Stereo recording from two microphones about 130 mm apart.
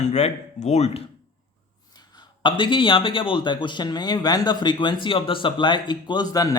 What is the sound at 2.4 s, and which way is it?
Speech, 40° left (ahead or behind).